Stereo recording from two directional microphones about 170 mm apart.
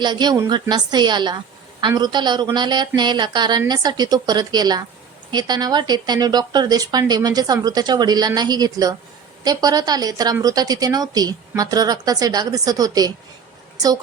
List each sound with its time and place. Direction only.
0.0 s speech: 25° right (ahead or behind)